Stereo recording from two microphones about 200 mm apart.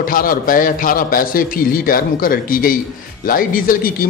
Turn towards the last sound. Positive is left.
turn(degrees=45)  # may be behind; listen again after turning